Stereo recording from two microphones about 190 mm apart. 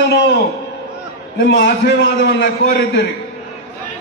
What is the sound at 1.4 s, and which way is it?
Speech, 70° left (ahead or behind).